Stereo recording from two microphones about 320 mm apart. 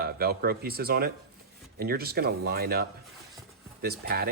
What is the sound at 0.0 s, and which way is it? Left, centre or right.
Speech, right.